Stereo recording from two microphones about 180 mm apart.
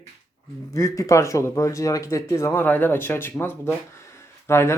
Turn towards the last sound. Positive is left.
turn(degrees=15)  # may be behind; listen again after turning